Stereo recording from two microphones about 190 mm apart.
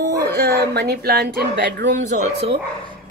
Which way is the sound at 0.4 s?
60° right (ahead or behind).